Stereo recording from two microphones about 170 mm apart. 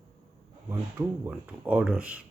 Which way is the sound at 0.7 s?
10° right (ahead or behind).